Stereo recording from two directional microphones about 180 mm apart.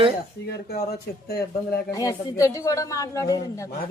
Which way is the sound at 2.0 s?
20° left (ahead or behind).